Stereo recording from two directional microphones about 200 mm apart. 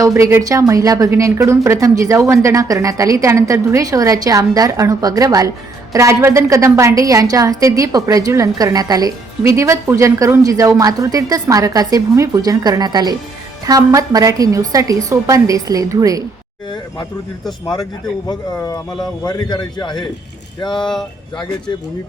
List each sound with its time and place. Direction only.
0.0 s a woman's voice: 15° right (ahead or behind)
18.3 s a man's voice: 15° left (ahead or behind)
20.8 s speech: centre (ahead or behind)